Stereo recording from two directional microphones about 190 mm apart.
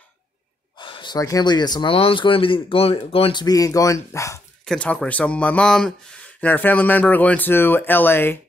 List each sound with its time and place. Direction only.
0.7 s speech: 25° left (ahead or behind)